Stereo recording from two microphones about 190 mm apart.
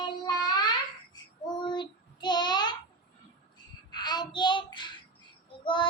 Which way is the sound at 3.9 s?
20° left (ahead or behind).